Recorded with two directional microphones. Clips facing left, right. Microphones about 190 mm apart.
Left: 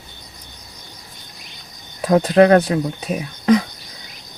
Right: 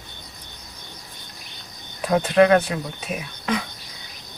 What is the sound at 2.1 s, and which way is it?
Speech, 40° left (ahead or behind).